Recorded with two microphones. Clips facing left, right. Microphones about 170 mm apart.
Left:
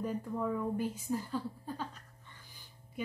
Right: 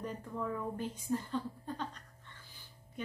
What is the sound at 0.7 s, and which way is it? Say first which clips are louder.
A woman's voice: left 2 dB; 10° left (ahead or behind).